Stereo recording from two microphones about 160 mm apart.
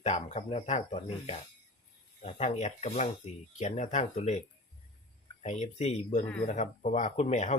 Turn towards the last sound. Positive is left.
turn(degrees=45)  # may be behind; listen again after turning